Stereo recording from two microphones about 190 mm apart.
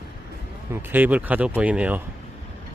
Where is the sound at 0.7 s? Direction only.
10° right (ahead or behind).